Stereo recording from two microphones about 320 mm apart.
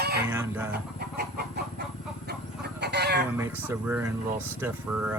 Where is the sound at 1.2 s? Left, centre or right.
Right.